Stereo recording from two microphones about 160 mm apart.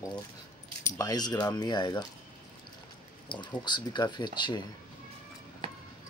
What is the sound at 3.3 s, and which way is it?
Speech, 30° left (ahead or behind).